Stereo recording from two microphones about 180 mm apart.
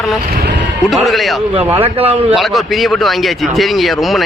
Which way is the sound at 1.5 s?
30° right (ahead or behind).